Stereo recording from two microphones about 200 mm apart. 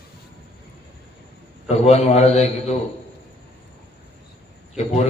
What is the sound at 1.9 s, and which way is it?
Speech, 35° left (ahead or behind).